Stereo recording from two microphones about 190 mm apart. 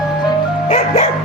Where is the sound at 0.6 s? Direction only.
35° left (ahead or behind).